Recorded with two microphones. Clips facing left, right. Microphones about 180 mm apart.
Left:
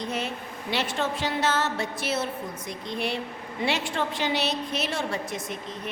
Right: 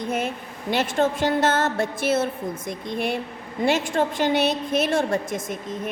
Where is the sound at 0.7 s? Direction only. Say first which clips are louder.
Right 6 dB; 50° right (ahead or behind).